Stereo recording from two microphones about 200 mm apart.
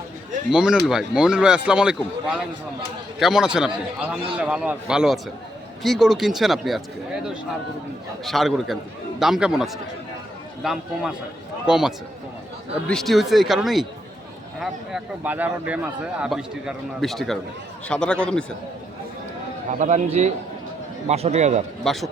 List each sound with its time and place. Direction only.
0.5 s a man's voice: 5° right (ahead or behind)
8.2 s a man's voice: centre (ahead or behind)
19.8 s a man's voice: 35° right (ahead or behind)
21.8 s a man's voice: centre (ahead or behind)